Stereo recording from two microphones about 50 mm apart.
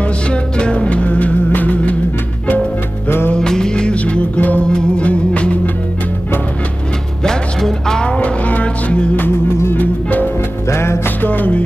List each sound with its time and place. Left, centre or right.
0.3 s music: left
3.3 s music: centre
7.2 s music: centre
8.2 s music: left
10.7 s music: left
11.2 s music: left